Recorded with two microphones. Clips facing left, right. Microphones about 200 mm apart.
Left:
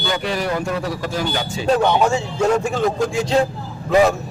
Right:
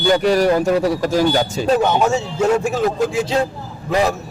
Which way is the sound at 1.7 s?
5° right (ahead or behind).